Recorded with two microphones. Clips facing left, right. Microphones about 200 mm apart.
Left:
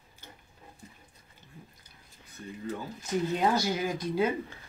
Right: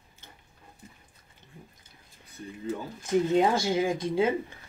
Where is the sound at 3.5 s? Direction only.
25° right (ahead or behind).